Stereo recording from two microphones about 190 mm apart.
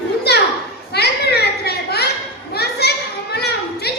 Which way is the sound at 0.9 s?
60° left (ahead or behind).